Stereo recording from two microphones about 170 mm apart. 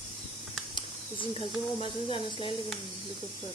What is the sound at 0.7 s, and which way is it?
Speech, 30° left (ahead or behind).